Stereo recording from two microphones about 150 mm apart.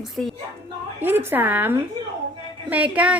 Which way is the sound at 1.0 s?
15° right (ahead or behind).